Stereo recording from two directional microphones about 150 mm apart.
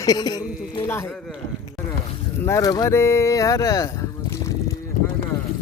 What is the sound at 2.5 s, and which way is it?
Speech, 25° left (ahead or behind).